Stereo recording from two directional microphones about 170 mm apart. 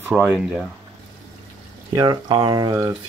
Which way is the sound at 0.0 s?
10° right (ahead or behind).